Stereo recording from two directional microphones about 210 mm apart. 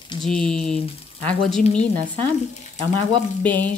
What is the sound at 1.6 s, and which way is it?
Speech, 30° left (ahead or behind).